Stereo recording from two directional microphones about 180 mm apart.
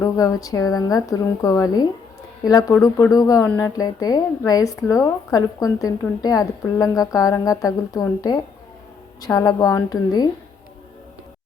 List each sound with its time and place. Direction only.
0.0 s a woman's voice: 20° left (ahead or behind)